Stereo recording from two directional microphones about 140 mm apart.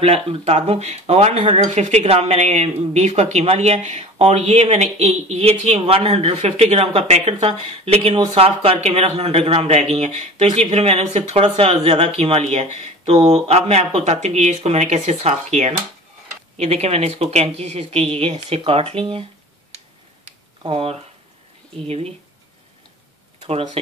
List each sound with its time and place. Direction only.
0.0 s speech: 45° right (ahead or behind)
20.6 s speech: 40° right (ahead or behind)
23.4 s speech: 45° right (ahead or behind)